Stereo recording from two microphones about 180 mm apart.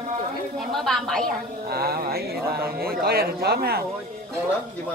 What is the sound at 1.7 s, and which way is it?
Speech, 60° right (ahead or behind).